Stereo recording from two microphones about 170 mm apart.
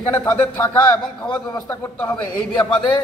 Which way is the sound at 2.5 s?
30° left (ahead or behind).